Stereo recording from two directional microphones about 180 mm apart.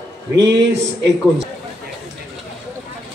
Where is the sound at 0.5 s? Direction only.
75° right (ahead or behind).